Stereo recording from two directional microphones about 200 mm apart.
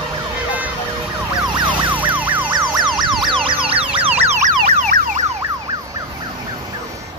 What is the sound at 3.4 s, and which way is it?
Emergency vehicle, 25° right (ahead or behind).